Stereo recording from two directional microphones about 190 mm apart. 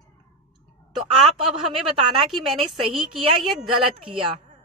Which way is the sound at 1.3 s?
30° right (ahead or behind).